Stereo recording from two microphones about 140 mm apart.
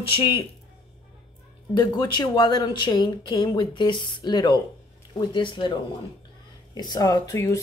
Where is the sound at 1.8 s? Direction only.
30° left (ahead or behind).